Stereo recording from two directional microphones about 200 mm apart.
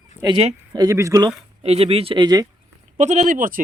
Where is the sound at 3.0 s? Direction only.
35° right (ahead or behind).